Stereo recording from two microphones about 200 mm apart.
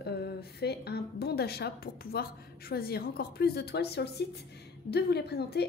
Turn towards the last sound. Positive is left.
turn(degrees=55)  # may be behind; listen again after turning